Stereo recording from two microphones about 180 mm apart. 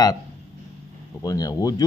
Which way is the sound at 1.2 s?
20° left (ahead or behind).